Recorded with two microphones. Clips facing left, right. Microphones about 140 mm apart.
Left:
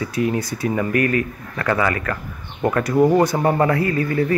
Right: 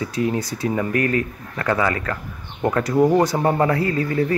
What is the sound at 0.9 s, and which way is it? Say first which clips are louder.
Speech: left 2 dB; 15° left (ahead or behind).